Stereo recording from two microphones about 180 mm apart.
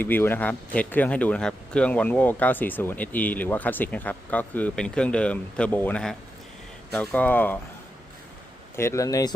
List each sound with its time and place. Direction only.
0.0 s speech: 10° left (ahead or behind)
8.7 s speech: 15° left (ahead or behind)